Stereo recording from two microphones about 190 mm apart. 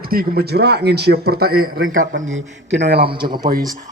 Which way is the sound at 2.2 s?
90° right.